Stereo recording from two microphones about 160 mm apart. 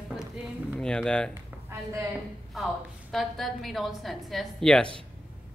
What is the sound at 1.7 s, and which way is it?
Speech, 15° right (ahead or behind).